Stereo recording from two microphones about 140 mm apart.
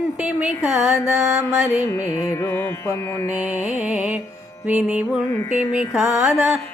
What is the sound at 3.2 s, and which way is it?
Music, 10° right (ahead or behind).